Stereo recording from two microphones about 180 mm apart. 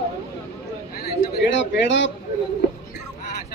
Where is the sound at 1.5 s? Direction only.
90° left.